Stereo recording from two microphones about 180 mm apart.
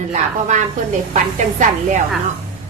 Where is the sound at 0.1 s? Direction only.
40° right (ahead or behind).